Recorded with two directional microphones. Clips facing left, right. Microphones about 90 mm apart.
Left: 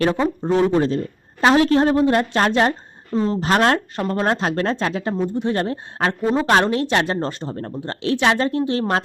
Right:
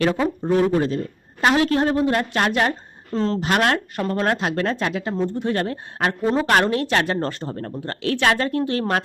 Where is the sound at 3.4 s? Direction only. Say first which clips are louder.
Left 4 dB; 30° left (ahead or behind).